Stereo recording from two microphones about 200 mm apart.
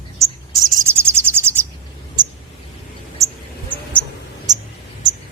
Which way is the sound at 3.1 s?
15° right (ahead or behind).